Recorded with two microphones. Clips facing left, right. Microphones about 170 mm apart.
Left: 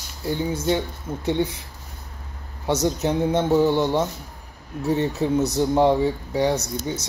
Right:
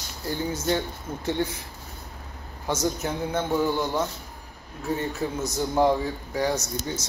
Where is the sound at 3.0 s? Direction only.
20° left (ahead or behind).